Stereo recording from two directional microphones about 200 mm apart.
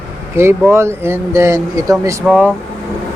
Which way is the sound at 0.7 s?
15° right (ahead or behind).